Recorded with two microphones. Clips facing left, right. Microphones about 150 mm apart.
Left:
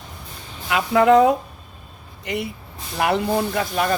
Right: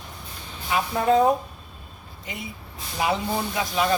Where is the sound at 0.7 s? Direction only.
80° left.